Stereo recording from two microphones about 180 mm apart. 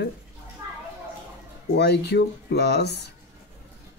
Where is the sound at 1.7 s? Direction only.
70° left (ahead or behind).